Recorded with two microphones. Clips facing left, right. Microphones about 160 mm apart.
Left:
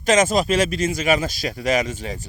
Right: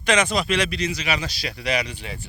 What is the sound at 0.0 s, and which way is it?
Speech, 40° left (ahead or behind).